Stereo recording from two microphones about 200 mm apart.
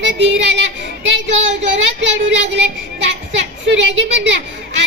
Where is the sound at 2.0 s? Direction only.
65° right (ahead or behind).